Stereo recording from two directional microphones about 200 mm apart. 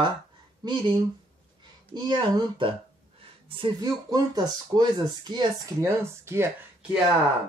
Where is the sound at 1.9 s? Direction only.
25° right (ahead or behind).